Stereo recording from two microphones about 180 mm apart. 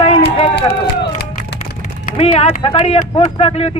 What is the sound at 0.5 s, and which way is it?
Speech, 70° left (ahead or behind).